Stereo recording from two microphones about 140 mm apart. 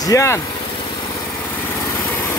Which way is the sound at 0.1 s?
20° left (ahead or behind).